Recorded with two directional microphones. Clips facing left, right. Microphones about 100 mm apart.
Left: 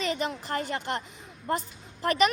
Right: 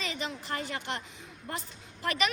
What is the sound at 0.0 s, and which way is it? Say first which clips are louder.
A woman's voice: left 7 dB; 45° left (ahead or behind).